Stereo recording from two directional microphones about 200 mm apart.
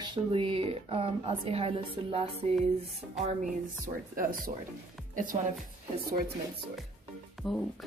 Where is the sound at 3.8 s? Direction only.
45° right (ahead or behind).